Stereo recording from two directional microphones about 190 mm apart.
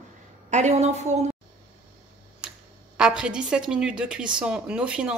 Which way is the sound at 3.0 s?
5° right (ahead or behind).